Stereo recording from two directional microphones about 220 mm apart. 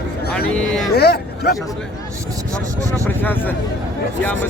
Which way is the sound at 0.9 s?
45° left (ahead or behind).